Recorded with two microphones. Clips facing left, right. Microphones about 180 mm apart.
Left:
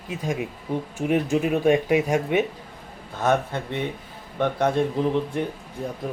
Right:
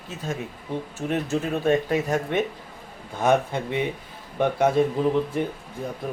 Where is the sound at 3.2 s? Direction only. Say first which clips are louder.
Right 1 dB; 10° right (ahead or behind).